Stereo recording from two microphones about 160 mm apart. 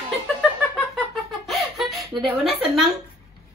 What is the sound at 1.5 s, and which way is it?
Giggle, centre (ahead or behind).